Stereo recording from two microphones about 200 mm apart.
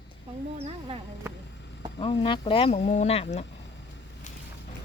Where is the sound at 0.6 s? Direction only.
30° right (ahead or behind).